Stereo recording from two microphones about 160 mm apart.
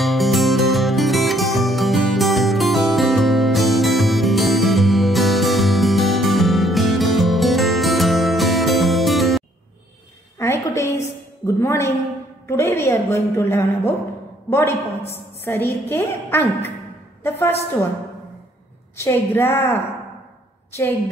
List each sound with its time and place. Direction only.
0.0 s music: centre (ahead or behind)
10.4 s a sound: 15° left (ahead or behind)
12.4 s a woman's voice: 15° left (ahead or behind)
18.9 s a woman's voice: 15° left (ahead or behind)